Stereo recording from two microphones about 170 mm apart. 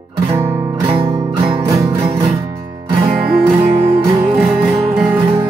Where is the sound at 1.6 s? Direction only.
20° right (ahead or behind).